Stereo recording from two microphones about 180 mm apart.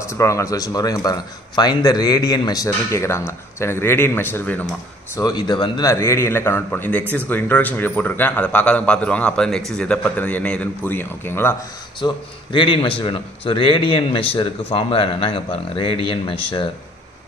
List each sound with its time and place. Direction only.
0.0 s a man's voice: 15° left (ahead or behind)
5.1 s a man's voice: 20° left (ahead or behind)
12.0 s a man's voice: 25° left (ahead or behind)